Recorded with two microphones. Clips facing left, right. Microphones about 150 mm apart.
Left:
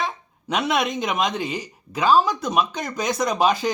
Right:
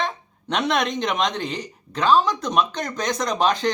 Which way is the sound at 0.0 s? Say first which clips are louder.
Right 1 dB; 5° left (ahead or behind).